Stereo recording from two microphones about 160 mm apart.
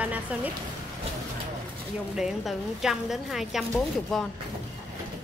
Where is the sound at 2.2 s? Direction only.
5° right (ahead or behind).